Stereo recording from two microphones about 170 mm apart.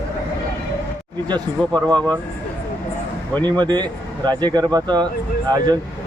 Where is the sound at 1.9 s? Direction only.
5° left (ahead or behind).